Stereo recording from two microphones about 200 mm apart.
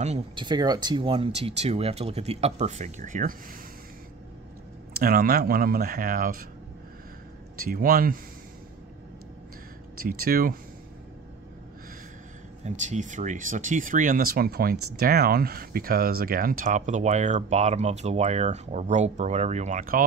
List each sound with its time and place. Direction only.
0.0 s speech: 30° right (ahead or behind)
0.5 s speech: 20° right (ahead or behind); by 3.3 s 40° right (ahead or behind)
4.9 s speech: 50° right (ahead or behind)
7.6 s speech: 45° right (ahead or behind)
10.0 s speech: 45° right (ahead or behind)
12.6 s speech: 35° right (ahead or behind)